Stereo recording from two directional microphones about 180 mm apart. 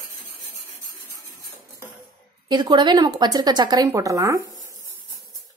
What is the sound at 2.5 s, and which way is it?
Speech, 25° right (ahead or behind).